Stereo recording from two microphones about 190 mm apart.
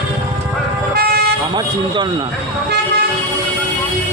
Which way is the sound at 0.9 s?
55° right (ahead or behind).